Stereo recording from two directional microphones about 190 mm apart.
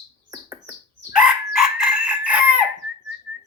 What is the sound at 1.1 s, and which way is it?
Chicken, 5° right (ahead or behind).